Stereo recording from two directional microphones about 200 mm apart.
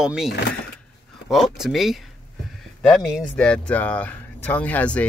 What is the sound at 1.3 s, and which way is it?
Speech, centre (ahead or behind).